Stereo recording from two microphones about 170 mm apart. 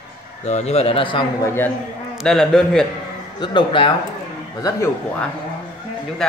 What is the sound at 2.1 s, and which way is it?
Speech, centre (ahead or behind).